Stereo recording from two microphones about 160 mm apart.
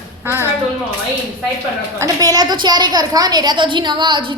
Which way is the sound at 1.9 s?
20° right (ahead or behind).